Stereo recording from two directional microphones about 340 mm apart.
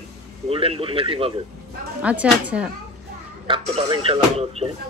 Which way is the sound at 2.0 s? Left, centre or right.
Centre.